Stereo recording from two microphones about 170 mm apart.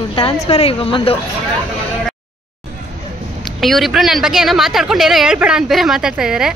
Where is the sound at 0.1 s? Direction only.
30° left (ahead or behind).